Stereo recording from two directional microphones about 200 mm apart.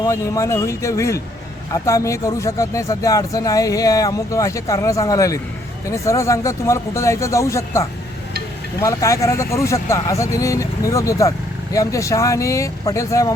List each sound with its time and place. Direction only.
0.0 s speech: 15° left (ahead or behind)